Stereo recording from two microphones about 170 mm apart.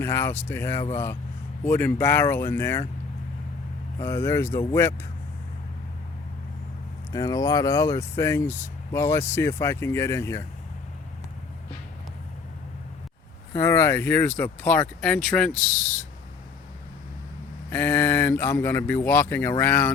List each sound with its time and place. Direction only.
0.0 s speech: 15° left (ahead or behind)
4.0 s speech: 15° left (ahead or behind)
7.1 s speech: 20° left (ahead or behind)
13.5 s speech: 15° left (ahead or behind)
17.7 s speech: 10° left (ahead or behind)